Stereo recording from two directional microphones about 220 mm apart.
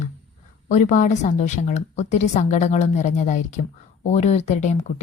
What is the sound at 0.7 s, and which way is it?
A woman's voice, 35° left (ahead or behind).